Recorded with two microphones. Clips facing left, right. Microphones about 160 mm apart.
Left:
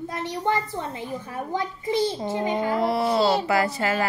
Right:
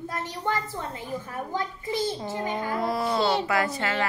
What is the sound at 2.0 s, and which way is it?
A child's voice, 20° left (ahead or behind).